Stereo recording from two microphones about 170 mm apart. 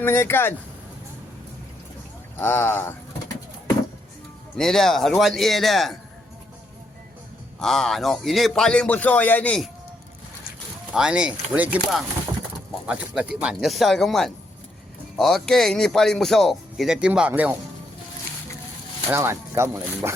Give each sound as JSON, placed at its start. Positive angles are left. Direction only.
{"t": 0.0, "sound": "speech", "side_deg": 15}
{"t": 2.4, "sound": "speech", "side_deg": 10}
{"t": 4.5, "sound": "a man's voice", "side_deg": 5}
{"t": 7.6, "sound": "a man's voice", "side_deg": 0}
{"t": 10.9, "sound": "a man's voice", "side_deg": -5}
{"t": 19.1, "sound": "speech", "side_deg": -15}